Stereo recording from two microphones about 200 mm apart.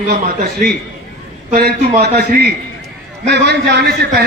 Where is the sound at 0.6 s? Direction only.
45° right (ahead or behind).